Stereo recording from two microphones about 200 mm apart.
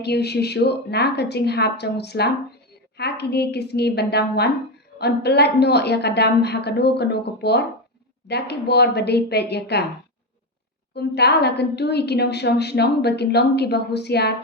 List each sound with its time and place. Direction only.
0.0 s a woman's voice: 55° left (ahead or behind)
10.9 s a woman's voice: 55° left (ahead or behind)